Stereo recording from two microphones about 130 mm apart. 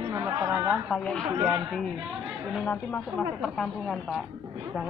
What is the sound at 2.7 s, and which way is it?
Speech, 15° left (ahead or behind).